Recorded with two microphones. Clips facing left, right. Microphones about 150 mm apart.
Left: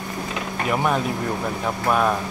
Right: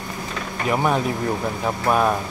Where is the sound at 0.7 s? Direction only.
Centre (ahead or behind).